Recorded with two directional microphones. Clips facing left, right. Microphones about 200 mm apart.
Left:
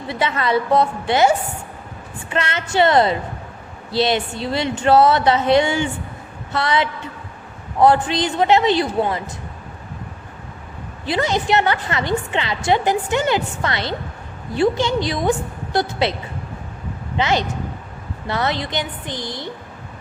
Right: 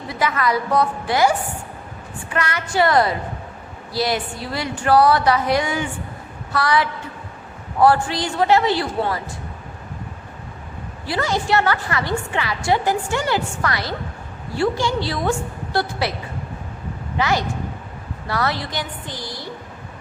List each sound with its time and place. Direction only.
0.1 s a woman's voice: 25° left (ahead or behind)
11.0 s a woman's voice: 20° left (ahead or behind)
17.2 s a woman's voice: 20° left (ahead or behind)